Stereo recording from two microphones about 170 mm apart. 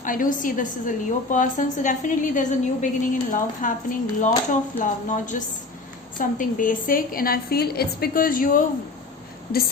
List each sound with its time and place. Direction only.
0.0 s a woman's voice: 50° left (ahead or behind)